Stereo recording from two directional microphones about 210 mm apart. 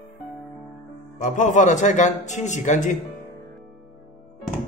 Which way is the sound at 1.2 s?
40° left (ahead or behind).